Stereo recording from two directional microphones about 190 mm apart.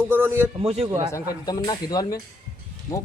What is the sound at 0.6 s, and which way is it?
Speech, 30° right (ahead or behind).